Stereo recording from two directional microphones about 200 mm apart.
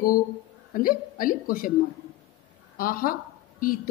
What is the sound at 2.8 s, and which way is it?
A woman's voice, 45° left (ahead or behind).